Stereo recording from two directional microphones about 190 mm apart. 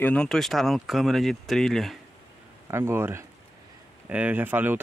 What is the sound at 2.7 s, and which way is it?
Speech, 15° right (ahead or behind).